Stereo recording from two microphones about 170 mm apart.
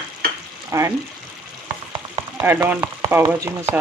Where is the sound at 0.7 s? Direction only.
15° right (ahead or behind).